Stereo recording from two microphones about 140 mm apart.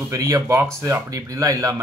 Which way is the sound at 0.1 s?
20° right (ahead or behind).